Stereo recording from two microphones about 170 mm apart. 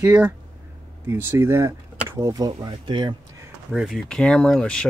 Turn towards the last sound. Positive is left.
turn(degrees=5)  # may be behind; listen again after turning